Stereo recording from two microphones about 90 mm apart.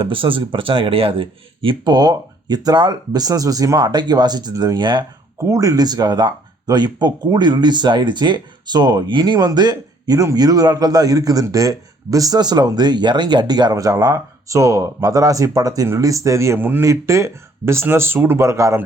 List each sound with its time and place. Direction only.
0.0 s speech: 70° right (ahead or behind)
1.8 s a man's voice: 55° right (ahead or behind)
5.4 s a man's voice: 40° right (ahead or behind)
16.6 s a man's voice: 20° right (ahead or behind)
16.8 s speech: 35° right (ahead or behind)